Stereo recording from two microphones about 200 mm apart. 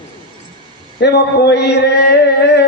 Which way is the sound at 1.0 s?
55° left (ahead or behind).